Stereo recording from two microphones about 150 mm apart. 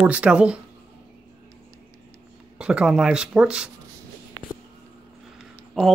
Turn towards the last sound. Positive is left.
turn(degrees=0)  # may be behind; listen again after turning